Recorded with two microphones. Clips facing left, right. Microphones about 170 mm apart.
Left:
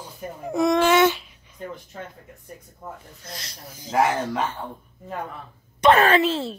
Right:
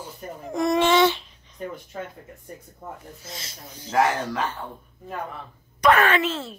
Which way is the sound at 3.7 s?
15° left (ahead or behind).